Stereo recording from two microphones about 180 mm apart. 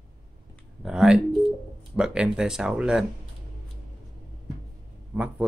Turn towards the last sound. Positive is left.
turn(degrees=-5)  # may be behind; listen again after turning